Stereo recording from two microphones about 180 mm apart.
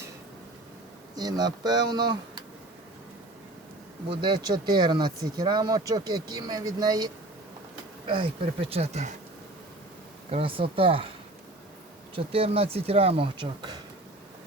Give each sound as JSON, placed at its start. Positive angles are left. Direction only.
{"t": 1.1, "sound": "speech", "side_deg": -20}
{"t": 4.1, "sound": "speech", "side_deg": -25}
{"t": 10.3, "sound": "speech", "side_deg": -30}
{"t": 12.1, "sound": "speech", "side_deg": -30}